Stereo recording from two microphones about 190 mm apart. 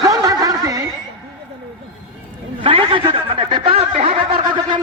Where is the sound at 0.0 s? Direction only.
20° right (ahead or behind).